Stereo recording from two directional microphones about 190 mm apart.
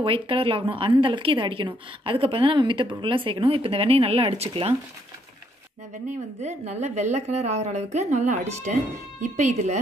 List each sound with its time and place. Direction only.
0.0 s speech: 30° right (ahead or behind)
6.0 s a woman's voice: 35° right (ahead or behind)